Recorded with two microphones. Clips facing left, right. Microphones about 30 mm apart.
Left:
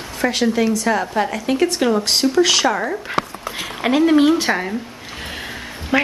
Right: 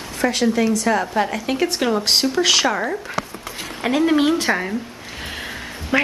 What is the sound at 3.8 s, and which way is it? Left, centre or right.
Speech, centre.